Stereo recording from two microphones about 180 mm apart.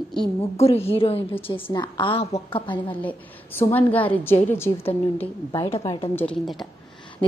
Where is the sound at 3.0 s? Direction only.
10° left (ahead or behind).